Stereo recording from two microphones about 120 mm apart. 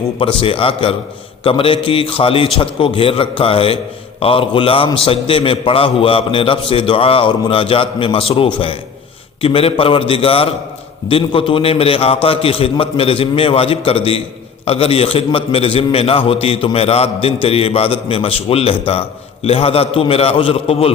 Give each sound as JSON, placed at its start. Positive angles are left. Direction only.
{"t": 0.2, "sound": "a man's voice", "side_deg": 45}